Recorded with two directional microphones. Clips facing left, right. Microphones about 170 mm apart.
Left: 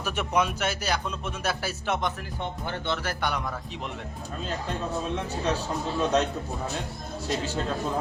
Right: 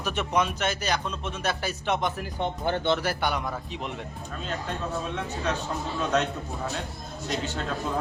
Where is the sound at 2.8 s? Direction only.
20° right (ahead or behind).